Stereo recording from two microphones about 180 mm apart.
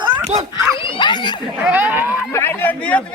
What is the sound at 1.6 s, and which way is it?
Speech, 10° right (ahead or behind).